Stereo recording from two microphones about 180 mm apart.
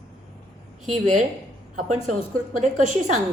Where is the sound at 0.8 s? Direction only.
40° right (ahead or behind).